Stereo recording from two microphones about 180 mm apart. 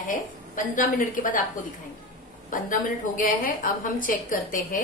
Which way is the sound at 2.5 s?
50° left (ahead or behind).